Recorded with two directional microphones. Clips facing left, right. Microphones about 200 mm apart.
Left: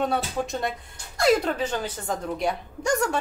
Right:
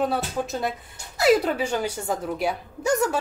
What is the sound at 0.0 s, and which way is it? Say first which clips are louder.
A woman's voice: right 1 dB; 5° right (ahead or behind).